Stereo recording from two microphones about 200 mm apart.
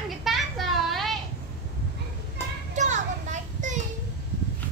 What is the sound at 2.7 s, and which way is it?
Children playing, 35° right (ahead or behind).